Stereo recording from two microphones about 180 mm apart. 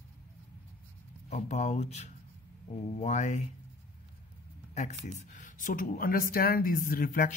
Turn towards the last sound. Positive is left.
turn(degrees=50)  # may be behind; listen again after turning